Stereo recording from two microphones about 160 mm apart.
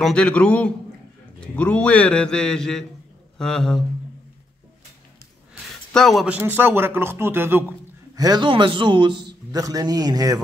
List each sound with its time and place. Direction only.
0.0 s a man's voice: 5° left (ahead or behind)
5.5 s speech: centre (ahead or behind)
8.2 s a man's voice: 25° right (ahead or behind)